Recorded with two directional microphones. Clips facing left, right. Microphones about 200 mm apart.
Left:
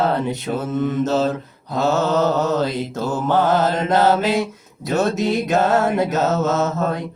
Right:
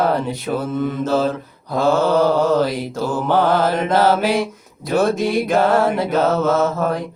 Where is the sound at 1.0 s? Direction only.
20° left (ahead or behind).